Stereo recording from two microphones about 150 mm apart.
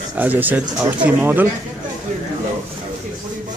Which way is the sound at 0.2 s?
10° right (ahead or behind).